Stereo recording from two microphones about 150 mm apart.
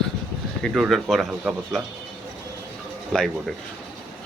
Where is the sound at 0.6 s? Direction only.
Centre (ahead or behind).